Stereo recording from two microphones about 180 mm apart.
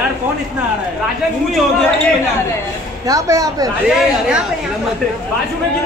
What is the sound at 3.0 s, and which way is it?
Speech, 20° right (ahead or behind).